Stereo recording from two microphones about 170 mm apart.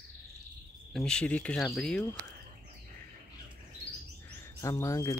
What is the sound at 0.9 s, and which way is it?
Speech, 5° left (ahead or behind).